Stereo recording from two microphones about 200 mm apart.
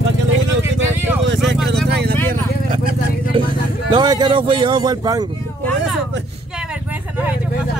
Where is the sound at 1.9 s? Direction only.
55° right (ahead or behind).